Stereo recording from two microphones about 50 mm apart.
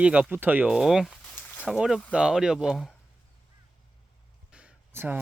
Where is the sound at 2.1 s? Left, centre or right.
Centre.